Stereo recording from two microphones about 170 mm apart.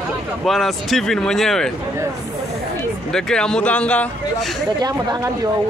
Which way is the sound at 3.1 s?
5° left (ahead or behind).